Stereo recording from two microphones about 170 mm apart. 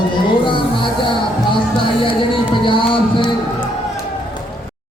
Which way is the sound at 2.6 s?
30° left (ahead or behind).